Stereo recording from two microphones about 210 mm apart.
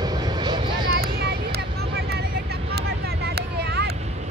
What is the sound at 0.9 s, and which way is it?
Vehicle, 50° right (ahead or behind).